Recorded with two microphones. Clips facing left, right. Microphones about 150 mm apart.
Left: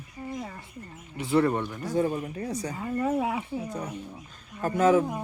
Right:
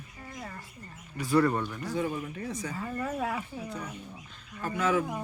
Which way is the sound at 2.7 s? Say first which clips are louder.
Left 7 dB; 20° left (ahead or behind).